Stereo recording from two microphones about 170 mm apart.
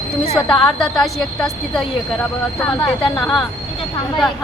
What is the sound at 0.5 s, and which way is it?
A woman's voice, centre (ahead or behind).